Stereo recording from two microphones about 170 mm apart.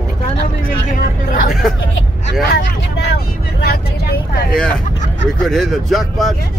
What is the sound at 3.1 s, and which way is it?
Speech, 70° left (ahead or behind).